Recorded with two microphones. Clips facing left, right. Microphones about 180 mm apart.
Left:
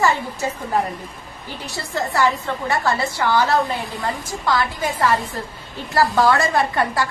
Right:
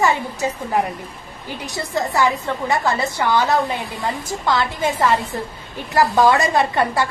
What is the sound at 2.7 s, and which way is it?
A woman's voice, 20° right (ahead or behind).